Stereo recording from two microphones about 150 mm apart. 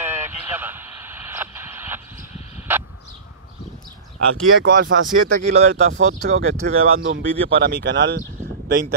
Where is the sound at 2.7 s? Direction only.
15° right (ahead or behind).